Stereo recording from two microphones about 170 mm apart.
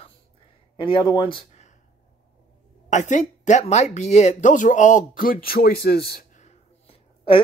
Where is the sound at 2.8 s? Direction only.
45° left (ahead or behind); by 6.2 s 70° left (ahead or behind).